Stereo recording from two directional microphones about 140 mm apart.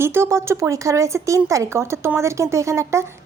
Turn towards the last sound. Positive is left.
turn(degrees=-20)  # may be behind; listen again after turning